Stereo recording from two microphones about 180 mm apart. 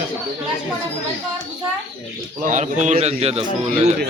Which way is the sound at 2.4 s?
45° right (ahead or behind).